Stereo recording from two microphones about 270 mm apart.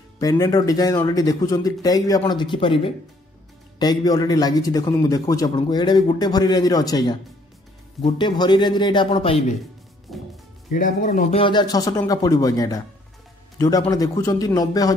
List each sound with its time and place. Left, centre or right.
0.2 s a man's voice: centre
10.1 s music: centre
10.7 s a man's voice: left; by 15.0 s centre